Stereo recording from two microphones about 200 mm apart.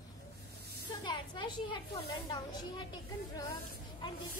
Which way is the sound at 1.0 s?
20° left (ahead or behind).